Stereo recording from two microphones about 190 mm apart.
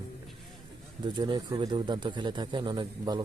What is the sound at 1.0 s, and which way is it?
Speech, 20° right (ahead or behind).